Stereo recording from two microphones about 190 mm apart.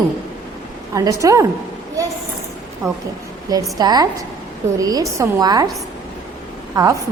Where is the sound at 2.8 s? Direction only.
15° right (ahead or behind).